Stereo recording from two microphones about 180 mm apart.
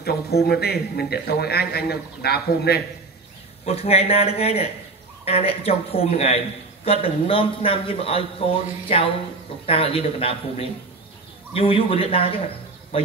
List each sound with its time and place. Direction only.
0.0 s a man's voice: 60° left (ahead or behind)
3.6 s a man's voice: 35° left (ahead or behind)